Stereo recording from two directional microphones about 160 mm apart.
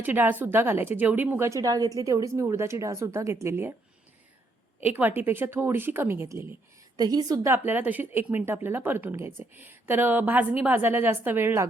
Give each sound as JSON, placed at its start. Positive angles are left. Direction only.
{"t": 0.0, "sound": "a woman's voice", "side_deg": -10}
{"t": 4.8, "sound": "a woman's voice", "side_deg": -10}